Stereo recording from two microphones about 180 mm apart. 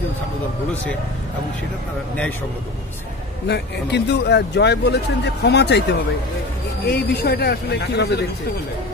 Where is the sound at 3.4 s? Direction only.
70° left (ahead or behind).